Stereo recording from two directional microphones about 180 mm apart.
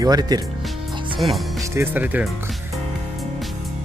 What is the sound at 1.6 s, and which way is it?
Speech, 10° right (ahead or behind).